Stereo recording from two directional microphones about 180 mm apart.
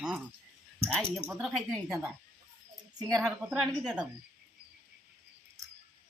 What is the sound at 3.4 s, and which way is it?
Speech, 5° right (ahead or behind).